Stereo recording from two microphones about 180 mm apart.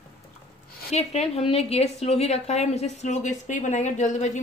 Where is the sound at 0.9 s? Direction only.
35° left (ahead or behind).